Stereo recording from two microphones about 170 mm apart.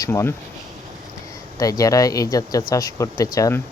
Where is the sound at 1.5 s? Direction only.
20° left (ahead or behind).